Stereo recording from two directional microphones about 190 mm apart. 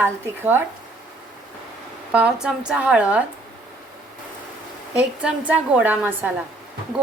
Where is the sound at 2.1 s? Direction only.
5° right (ahead or behind).